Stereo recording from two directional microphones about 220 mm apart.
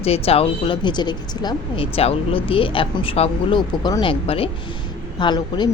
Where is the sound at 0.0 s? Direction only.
25° left (ahead or behind).